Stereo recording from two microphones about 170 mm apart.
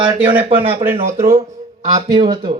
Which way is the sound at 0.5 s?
15° right (ahead or behind).